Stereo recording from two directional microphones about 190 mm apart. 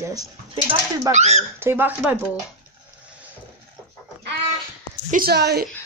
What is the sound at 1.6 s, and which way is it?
Speech, 10° right (ahead or behind).